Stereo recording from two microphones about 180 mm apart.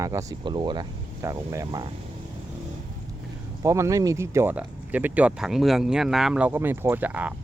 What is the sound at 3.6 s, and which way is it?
Speech, 15° right (ahead or behind).